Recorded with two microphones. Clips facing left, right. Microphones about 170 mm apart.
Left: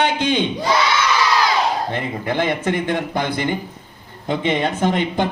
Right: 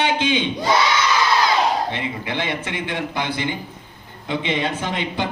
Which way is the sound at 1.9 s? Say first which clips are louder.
Left 3 dB; 50° left (ahead or behind).